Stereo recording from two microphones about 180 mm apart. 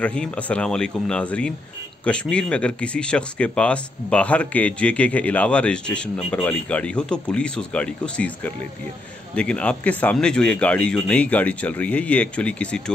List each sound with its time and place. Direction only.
0.0 s speech: 5° left (ahead or behind)